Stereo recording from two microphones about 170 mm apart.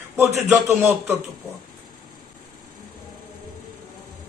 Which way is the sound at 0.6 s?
15° right (ahead or behind).